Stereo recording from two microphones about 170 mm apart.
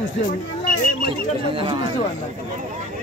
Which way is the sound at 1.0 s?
30° right (ahead or behind).